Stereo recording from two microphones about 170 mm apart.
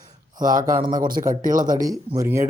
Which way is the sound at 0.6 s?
20° right (ahead or behind).